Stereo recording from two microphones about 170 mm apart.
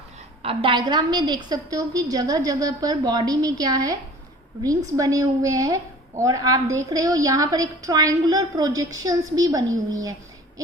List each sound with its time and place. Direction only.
0.4 s a woman's voice: 30° right (ahead or behind)
4.9 s a woman's voice: 20° right (ahead or behind)